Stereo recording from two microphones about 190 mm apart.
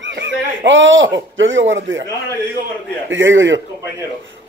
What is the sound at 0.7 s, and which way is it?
A man's voice, 80° right.